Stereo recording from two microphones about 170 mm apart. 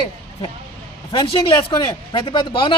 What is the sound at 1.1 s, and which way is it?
Speech, 30° left (ahead or behind).